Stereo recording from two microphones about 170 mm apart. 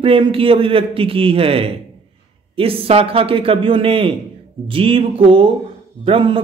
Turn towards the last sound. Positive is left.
turn(degrees=-30)  # may be behind; listen again after turning